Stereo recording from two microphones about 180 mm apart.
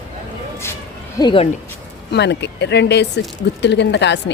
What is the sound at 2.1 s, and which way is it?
Speech, 70° left (ahead or behind).